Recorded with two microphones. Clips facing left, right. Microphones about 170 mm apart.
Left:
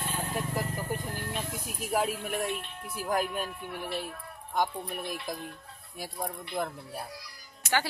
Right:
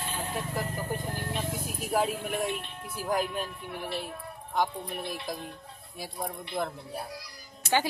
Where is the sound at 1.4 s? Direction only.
Centre (ahead or behind).